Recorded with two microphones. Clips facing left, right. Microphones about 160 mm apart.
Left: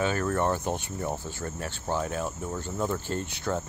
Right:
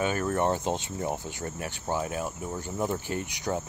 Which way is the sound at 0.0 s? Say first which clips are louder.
Even; 20° right (ahead or behind).